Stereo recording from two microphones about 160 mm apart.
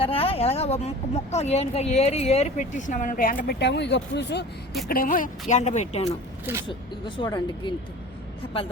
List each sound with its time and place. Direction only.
0.0 s a woman's voice: 35° left (ahead or behind); by 4.4 s 90° left
4.9 s a woman's voice: 60° left (ahead or behind); by 6.1 s 45° left (ahead or behind)
6.7 s speech: 30° left (ahead or behind)